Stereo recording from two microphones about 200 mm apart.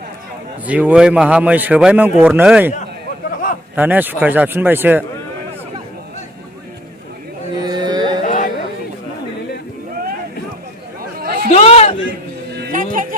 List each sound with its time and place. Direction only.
0.7 s speech: 5° right (ahead or behind)
3.8 s speech: 10° right (ahead or behind)
7.6 s carnatic music: 20° right (ahead or behind)
8.2 s music: 40° left (ahead or behind)
11.0 s chatter: 45° right (ahead or behind)
11.5 s a sound: 30° left (ahead or behind)
12.5 s music: 45° right (ahead or behind)